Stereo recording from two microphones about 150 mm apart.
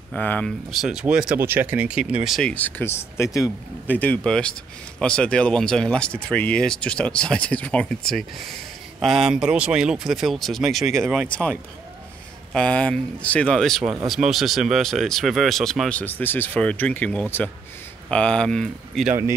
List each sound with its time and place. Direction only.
0.1 s speech: 10° left (ahead or behind)
2.5 s speech: 10° left (ahead or behind)
3.2 s speech: 20° left (ahead or behind)
3.9 s speech: 10° left (ahead or behind)
12.5 s speech: 5° left (ahead or behind)